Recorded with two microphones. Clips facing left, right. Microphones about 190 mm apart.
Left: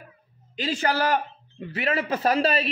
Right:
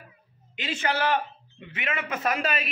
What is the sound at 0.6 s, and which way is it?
A man's voice, 35° left (ahead or behind).